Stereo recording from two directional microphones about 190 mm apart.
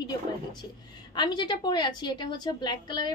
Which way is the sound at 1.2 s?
25° left (ahead or behind).